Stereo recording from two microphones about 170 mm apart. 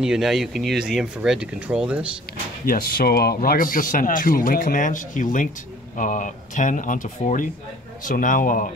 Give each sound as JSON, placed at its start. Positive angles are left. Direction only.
{"t": 0.0, "sound": "speech", "side_deg": -5}
{"t": 2.6, "sound": "a man's voice", "side_deg": 60}